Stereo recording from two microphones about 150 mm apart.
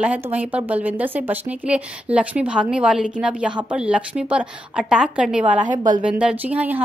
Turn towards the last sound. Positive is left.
turn(degrees=-10)  # may be behind; listen again after turning